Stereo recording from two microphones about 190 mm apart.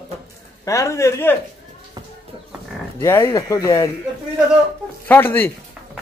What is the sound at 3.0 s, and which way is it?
Speech, 15° left (ahead or behind).